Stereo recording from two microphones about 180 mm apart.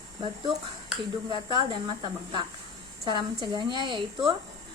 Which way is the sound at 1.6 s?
25° right (ahead or behind).